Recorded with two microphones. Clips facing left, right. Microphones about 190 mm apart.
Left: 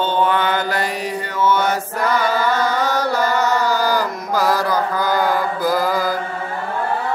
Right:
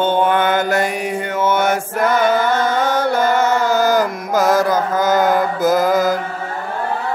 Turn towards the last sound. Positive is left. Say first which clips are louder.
# right 4 dB
turn(degrees=-45)  # may be behind; listen again after turning